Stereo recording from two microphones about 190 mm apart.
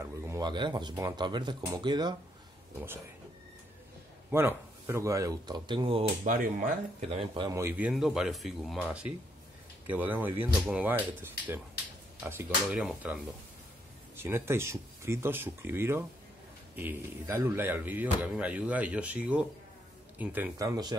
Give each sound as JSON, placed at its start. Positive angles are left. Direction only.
{"t": 0.0, "sound": "speech", "side_deg": -20}
{"t": 4.3, "sound": "speech", "side_deg": -15}
{"t": 6.2, "sound": "speech", "side_deg": -45}
{"t": 7.5, "sound": "speech", "side_deg": -10}